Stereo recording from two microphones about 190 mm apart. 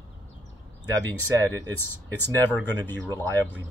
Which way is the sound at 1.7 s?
10° left (ahead or behind).